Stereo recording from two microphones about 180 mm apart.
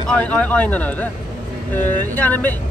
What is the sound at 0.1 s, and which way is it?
Speech, 5° left (ahead or behind).